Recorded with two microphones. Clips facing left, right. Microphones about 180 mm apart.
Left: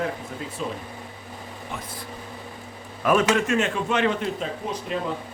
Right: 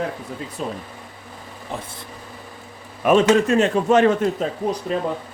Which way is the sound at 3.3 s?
35° right (ahead or behind).